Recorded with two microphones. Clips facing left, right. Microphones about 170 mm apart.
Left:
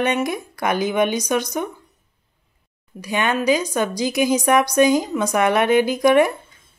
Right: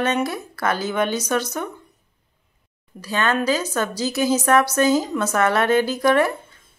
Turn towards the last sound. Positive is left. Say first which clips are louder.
# left 3 dB
turn(degrees=15)  # may be behind; listen again after turning